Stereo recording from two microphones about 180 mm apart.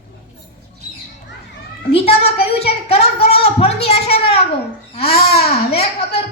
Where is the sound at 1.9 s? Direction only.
35° left (ahead or behind).